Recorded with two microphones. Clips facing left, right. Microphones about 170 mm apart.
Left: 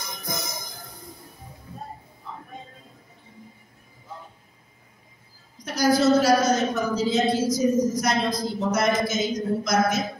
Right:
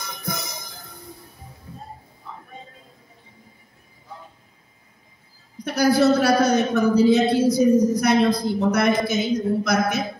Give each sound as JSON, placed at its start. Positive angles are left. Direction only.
{"t": 5.6, "sound": "a woman's voice", "side_deg": -60}